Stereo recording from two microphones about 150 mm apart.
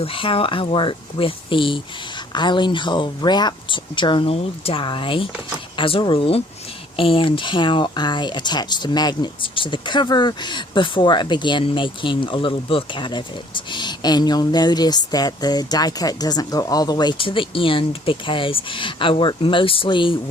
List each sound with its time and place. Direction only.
0.0 s speech: 35° left (ahead or behind)